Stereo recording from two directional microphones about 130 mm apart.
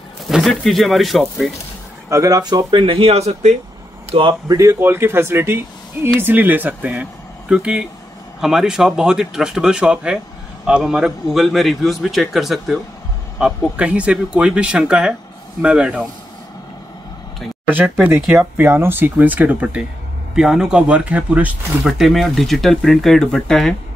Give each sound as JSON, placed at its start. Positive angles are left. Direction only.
{"t": 0.3, "sound": "a man's voice", "side_deg": 0}
{"t": 2.0, "sound": "speech", "side_deg": -25}
{"t": 4.1, "sound": "speech", "side_deg": -40}
{"t": 4.5, "sound": "a man's voice", "side_deg": -25}
{"t": 17.8, "sound": "a man's voice", "side_deg": -5}
{"t": 18.3, "sound": "speech", "side_deg": -15}
{"t": 21.8, "sound": "a man's voice", "side_deg": 0}